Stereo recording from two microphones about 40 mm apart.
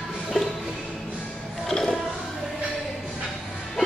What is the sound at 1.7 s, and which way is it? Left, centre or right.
Music, centre.